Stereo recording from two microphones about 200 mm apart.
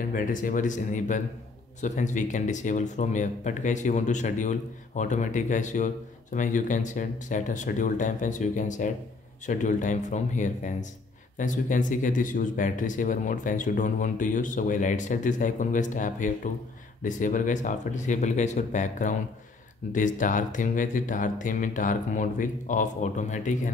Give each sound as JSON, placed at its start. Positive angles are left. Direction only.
{"t": 0.0, "sound": "speech", "side_deg": 45}